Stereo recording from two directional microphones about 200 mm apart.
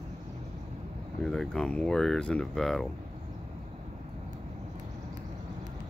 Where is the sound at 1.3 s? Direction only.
5° left (ahead or behind).